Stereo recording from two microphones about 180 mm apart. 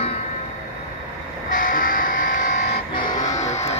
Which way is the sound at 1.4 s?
50° left (ahead or behind).